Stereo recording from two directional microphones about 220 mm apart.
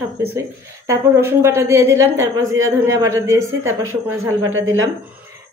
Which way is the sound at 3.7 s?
65° right (ahead or behind).